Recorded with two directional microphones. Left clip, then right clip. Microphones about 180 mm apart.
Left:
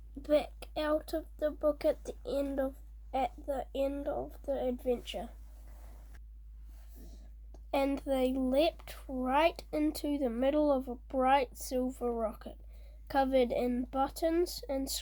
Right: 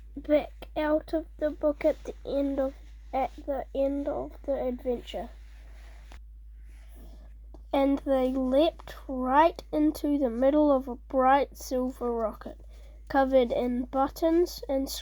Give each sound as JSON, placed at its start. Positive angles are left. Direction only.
{"t": 0.2, "sound": "speech", "side_deg": -40}
{"t": 7.5, "sound": "speech", "side_deg": -40}